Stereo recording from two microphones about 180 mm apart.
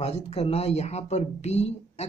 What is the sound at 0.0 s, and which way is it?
Speech, 35° left (ahead or behind).